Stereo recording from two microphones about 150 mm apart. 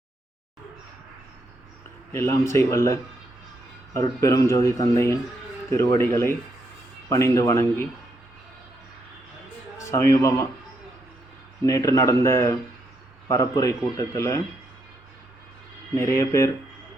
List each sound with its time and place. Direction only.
2.1 s speech: 15° left (ahead or behind)
9.7 s a man's voice: 20° left (ahead or behind)
11.6 s speech: 20° left (ahead or behind)
16.0 s speech: 20° left (ahead or behind)